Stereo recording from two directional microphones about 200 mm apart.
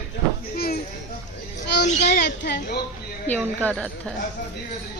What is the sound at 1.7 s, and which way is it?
Speech, 55° left (ahead or behind).